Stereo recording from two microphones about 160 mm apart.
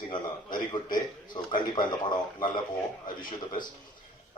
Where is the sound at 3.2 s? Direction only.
55° left (ahead or behind).